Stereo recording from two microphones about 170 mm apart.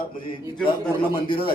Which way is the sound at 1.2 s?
30° left (ahead or behind).